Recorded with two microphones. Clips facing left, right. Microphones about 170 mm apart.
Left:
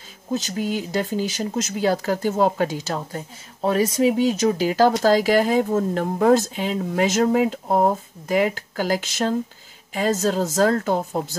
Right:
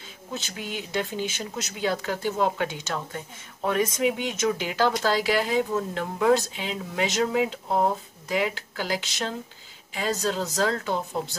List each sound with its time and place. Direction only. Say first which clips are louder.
0.3 s speech: left 10 dB; 40° left (ahead or behind)